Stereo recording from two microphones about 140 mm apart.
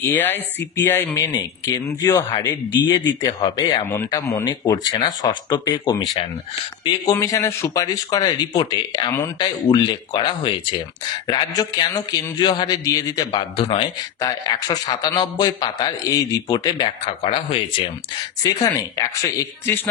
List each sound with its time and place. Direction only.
0.0 s speech: 15° left (ahead or behind)
1.2 s a man's voice: 30° left (ahead or behind)
7.1 s a man's voice: 20° left (ahead or behind)
17.0 s a man's voice: 40° left (ahead or behind)
18.4 s a man's voice: 25° left (ahead or behind)